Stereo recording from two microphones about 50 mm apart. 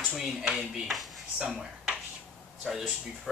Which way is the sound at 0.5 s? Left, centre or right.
Centre.